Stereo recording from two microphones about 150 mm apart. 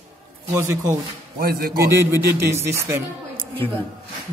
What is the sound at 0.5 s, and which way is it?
Speech, 20° right (ahead or behind).